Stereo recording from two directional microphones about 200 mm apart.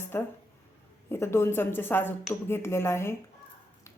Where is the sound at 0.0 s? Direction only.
10° left (ahead or behind).